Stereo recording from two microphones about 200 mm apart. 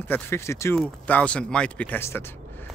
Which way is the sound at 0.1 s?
15° left (ahead or behind).